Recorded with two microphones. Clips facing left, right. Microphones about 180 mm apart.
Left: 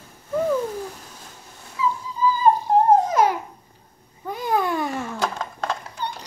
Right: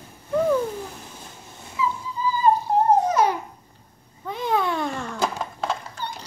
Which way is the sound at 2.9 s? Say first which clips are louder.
Even; 90° left.